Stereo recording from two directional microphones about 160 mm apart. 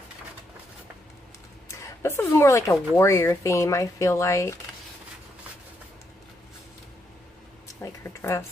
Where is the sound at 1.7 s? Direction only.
20° left (ahead or behind).